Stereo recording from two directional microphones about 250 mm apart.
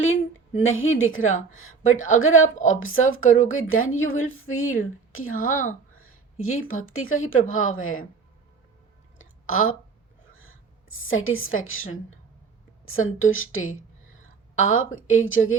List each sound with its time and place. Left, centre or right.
0.6 s speech: left
5.4 s speech: left
5.9 s a sound: left
6.4 s speech: left
9.1 s a sound: left
12.8 s a woman's voice: left